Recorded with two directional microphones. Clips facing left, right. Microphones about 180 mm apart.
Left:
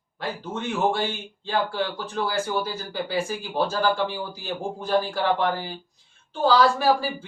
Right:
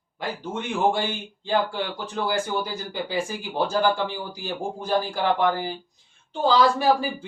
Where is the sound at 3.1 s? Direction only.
15° right (ahead or behind).